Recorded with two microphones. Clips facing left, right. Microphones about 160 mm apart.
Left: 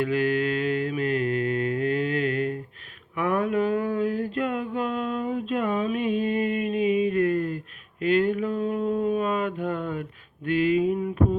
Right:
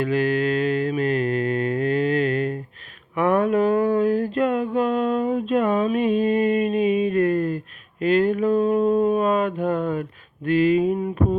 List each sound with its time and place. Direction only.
0.0 s mantra: 35° right (ahead or behind)
3.2 s a sound: 35° right (ahead or behind)
8.0 s mantra: 40° right (ahead or behind)